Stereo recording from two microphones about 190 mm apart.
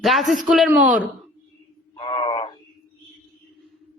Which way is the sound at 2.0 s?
25° left (ahead or behind).